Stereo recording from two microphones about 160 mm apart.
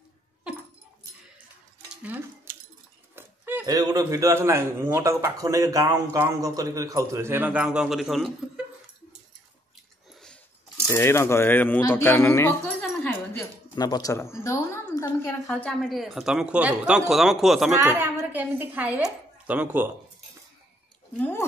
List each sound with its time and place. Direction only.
2.0 s speech: 10° right (ahead or behind)
3.2 s a sound: 15° right (ahead or behind)
3.7 s a man's voice: 25° right (ahead or behind); by 8.3 s centre (ahead or behind)
10.9 s speech: 15° left (ahead or behind)
13.7 s speech: 25° left (ahead or behind)
15.4 s speech: centre (ahead or behind)
17.7 s speech: 15° right (ahead or behind)
21.2 s a sound: 15° left (ahead or behind)